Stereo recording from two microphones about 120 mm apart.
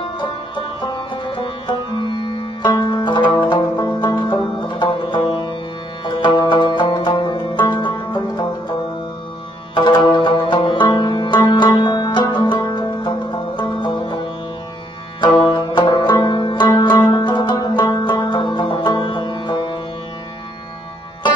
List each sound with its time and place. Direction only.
0.0 s music: 45° left (ahead or behind)
9.8 s music: 40° left (ahead or behind)
15.1 s banjo: 45° left (ahead or behind)